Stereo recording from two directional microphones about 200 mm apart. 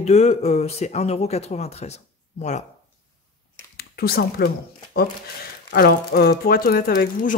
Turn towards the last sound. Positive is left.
turn(degrees=45)  # may be behind; listen again after turning